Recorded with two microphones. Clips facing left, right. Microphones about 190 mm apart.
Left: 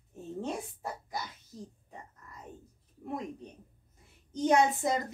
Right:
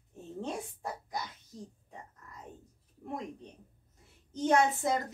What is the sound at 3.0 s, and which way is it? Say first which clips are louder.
Speech: left 2 dB; 5° left (ahead or behind).